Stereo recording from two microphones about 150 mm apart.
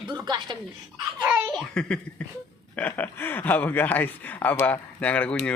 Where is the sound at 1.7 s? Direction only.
5° left (ahead or behind).